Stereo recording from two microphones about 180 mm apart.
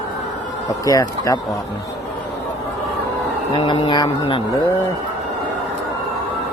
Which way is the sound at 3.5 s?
25° left (ahead or behind).